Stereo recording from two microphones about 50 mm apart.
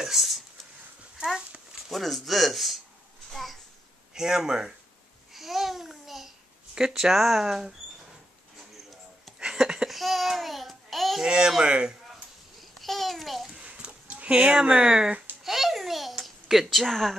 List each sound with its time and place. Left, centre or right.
0.0 s a sound: centre
1.1 s dog: centre
1.9 s speech: centre
3.3 s a sound: centre
4.1 s speech: centre
5.3 s babbling: centre
6.7 s speech: centre
9.4 s a sound: centre
9.8 s babbling: centre
11.2 s speech: centre
12.7 s babbling: centre
13.6 s a sound: right
15.4 s babbling: centre
16.8 s speech: centre